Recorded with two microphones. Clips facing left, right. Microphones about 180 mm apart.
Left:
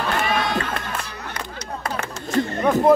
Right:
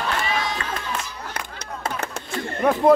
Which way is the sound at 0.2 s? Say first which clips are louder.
Left 4 dB; 60° left (ahead or behind).